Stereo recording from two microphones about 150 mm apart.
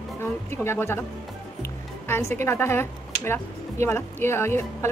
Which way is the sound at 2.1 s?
15° left (ahead or behind).